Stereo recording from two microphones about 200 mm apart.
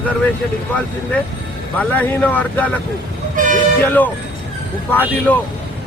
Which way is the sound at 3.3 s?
40° right (ahead or behind).